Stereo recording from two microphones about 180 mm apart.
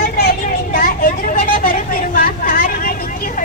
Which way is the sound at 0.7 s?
50° left (ahead or behind).